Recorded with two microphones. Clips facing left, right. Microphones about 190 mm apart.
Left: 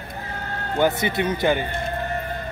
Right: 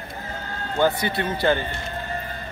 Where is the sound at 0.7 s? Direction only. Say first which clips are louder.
Left 1 dB; 20° left (ahead or behind).